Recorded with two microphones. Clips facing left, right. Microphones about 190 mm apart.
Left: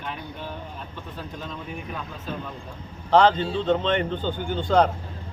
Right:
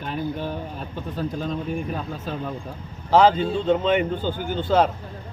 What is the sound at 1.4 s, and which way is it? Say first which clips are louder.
Speech: right 8 dB; 40° right (ahead or behind).